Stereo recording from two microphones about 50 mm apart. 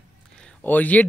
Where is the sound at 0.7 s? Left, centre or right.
Left.